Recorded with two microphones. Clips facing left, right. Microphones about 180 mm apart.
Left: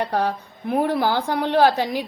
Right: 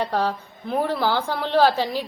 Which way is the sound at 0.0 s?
10° left (ahead or behind).